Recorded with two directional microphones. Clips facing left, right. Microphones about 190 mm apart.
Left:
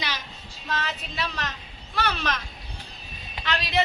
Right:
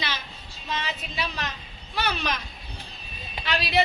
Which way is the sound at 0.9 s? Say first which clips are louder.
Even; 5° right (ahead or behind).